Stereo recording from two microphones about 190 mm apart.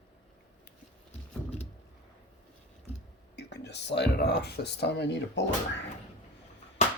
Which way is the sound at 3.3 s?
65° left (ahead or behind).